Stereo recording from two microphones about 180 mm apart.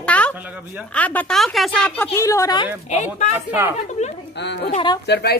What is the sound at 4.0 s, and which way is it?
Speech, 40° left (ahead or behind).